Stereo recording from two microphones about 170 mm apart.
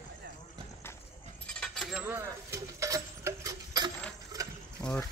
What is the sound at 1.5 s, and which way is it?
Keys jangling, 5° left (ahead or behind).